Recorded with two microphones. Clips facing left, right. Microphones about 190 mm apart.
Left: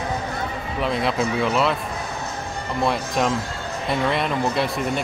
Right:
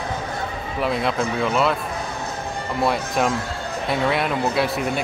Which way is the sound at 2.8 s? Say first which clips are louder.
Right 1 dB; 5° right (ahead or behind).